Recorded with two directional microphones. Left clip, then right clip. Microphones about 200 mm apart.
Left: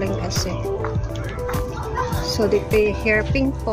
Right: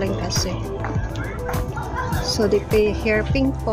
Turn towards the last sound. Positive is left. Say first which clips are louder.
# left 1 dB
turn(degrees=-5)  # may be behind; listen again after turning